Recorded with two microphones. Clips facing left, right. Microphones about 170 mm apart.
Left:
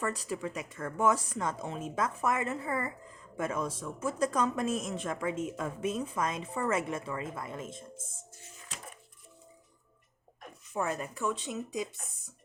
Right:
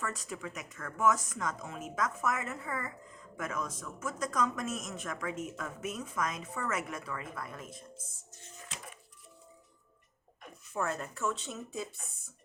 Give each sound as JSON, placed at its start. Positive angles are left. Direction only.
{"t": 0.0, "sound": "speech", "side_deg": 35}
{"t": 10.8, "sound": "speech", "side_deg": 15}